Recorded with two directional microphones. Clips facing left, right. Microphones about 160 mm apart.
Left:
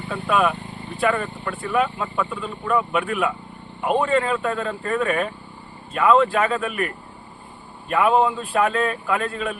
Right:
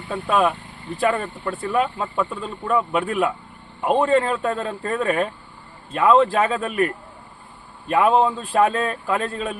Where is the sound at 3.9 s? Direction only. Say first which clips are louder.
Right 2 dB; 35° right (ahead or behind).